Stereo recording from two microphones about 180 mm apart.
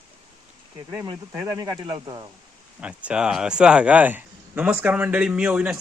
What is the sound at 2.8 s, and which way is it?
Speech, 5° right (ahead or behind).